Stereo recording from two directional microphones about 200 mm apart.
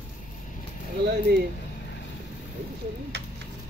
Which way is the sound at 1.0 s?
55° right (ahead or behind).